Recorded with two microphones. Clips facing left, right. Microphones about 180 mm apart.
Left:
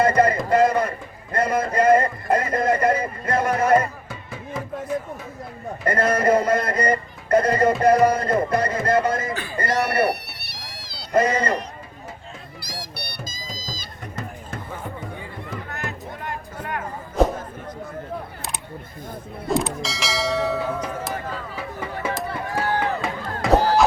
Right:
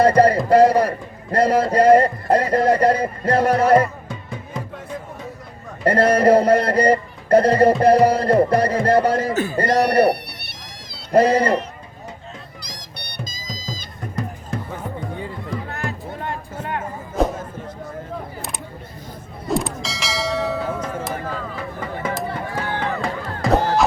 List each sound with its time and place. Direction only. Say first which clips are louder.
0.0 s a man's voice: right 4 dB; 35° right (ahead or behind)
4.1 s music: right 1 dB; 5° left (ahead or behind)
5.8 s music: right 5 dB; 35° right (ahead or behind)
9.6 s music: right 5 dB; 35° right (ahead or behind)
11.1 s music: right 5 dB; 35° right (ahead or behind)
12.6 s music: left 3 dB; 10° left (ahead or behind)
13.7 s a sound: right 5 dB; centre (ahead or behind)
15.7 s music: right 3 dB; 30° right (ahead or behind)
17.2 s a sound: left 1 dB; centre (ahead or behind)
19.5 s church bell: even; centre (ahead or behind)
22.0 s a sound: right 2 dB; centre (ahead or behind)
22.8 s music: right 1 dB; centre (ahead or behind)